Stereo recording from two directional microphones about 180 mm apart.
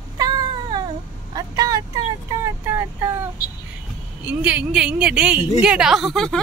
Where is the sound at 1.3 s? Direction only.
20° right (ahead or behind).